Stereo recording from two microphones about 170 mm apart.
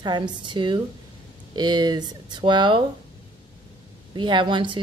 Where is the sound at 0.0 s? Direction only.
25° right (ahead or behind).